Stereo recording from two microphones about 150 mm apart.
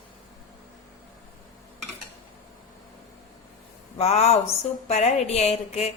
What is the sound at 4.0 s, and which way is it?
A woman's voice, 45° left (ahead or behind).